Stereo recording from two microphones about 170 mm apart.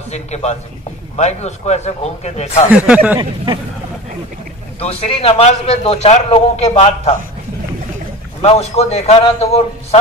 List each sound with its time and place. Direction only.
0.1 s a man's voice: 40° left (ahead or behind)
2.7 s speech: 5° right (ahead or behind)
4.7 s a man's voice: 35° left (ahead or behind)
8.4 s a man's voice: 35° left (ahead or behind)